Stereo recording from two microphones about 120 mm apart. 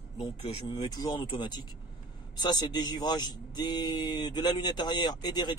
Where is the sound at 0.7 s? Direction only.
35° left (ahead or behind).